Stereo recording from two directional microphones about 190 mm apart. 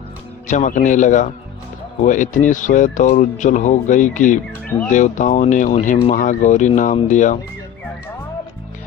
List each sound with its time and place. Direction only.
0.4 s speech: 40° left (ahead or behind)